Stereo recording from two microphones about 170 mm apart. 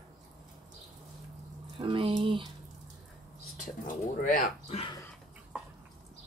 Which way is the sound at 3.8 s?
50° left (ahead or behind).